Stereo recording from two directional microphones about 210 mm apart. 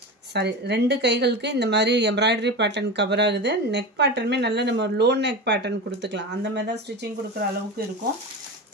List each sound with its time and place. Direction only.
0.3 s speech: 50° right (ahead or behind)